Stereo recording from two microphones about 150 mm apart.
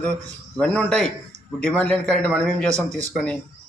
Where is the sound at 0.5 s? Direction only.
5° left (ahead or behind).